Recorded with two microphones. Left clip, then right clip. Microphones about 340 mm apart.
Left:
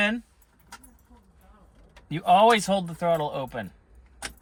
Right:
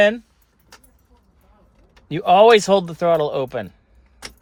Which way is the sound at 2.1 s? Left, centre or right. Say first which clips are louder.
Right 7 dB; centre.